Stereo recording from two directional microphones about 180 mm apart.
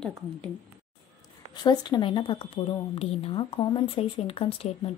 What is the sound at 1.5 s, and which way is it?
Speech, 25° left (ahead or behind).